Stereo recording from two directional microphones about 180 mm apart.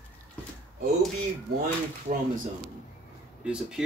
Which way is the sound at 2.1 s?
40° right (ahead or behind).